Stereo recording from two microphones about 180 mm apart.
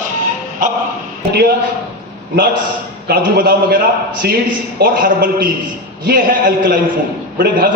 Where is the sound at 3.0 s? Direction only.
60° right (ahead or behind).